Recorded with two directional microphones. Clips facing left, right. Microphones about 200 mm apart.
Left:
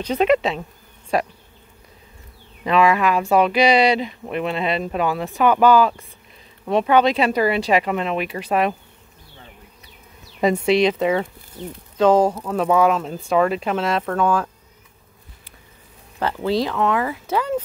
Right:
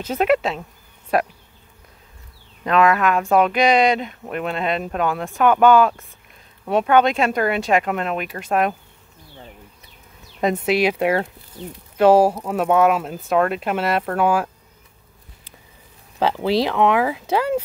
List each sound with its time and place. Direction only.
0.0 s speech: centre (ahead or behind)
2.6 s speech: centre (ahead or behind)
10.4 s speech: centre (ahead or behind)
16.2 s speech: 90° right
16.7 s speech: 15° right (ahead or behind)